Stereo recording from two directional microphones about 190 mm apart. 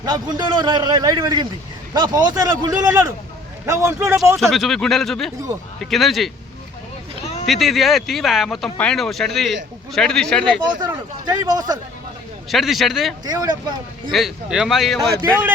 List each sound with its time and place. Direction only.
0.0 s a man's voice: 20° right (ahead or behind)
4.4 s speech: centre (ahead or behind)
7.4 s speech: centre (ahead or behind)
10.7 s a man's voice: 20° right (ahead or behind)
12.5 s speech: centre (ahead or behind)
13.2 s a man's voice: 20° right (ahead or behind)
14.1 s speech: centre (ahead or behind)